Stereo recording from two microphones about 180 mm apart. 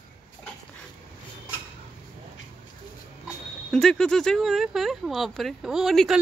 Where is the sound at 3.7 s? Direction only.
5° left (ahead or behind).